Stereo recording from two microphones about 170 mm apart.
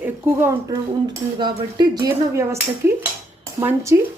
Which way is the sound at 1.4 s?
25° right (ahead or behind).